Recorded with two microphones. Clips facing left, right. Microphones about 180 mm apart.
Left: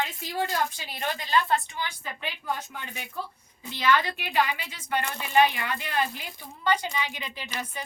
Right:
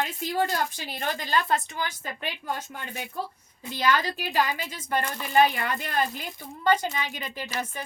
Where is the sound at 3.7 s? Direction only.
45° right (ahead or behind).